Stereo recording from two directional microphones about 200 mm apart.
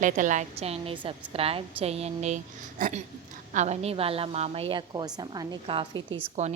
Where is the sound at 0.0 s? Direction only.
40° right (ahead or behind).